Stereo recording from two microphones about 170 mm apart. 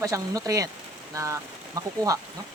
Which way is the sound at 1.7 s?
20° right (ahead or behind).